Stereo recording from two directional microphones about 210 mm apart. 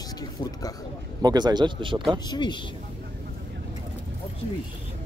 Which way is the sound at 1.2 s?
20° right (ahead or behind).